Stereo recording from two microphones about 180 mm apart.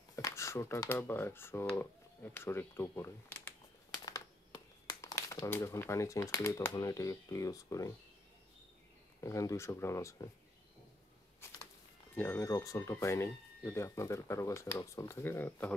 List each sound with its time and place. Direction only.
0.1 s speech: 15° left (ahead or behind)
4.8 s speech: 15° left (ahead or behind)
9.2 s speech: 15° left (ahead or behind)
12.2 s speech: 15° left (ahead or behind)